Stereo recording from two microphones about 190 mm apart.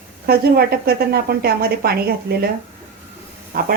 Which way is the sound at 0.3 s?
55° right (ahead or behind).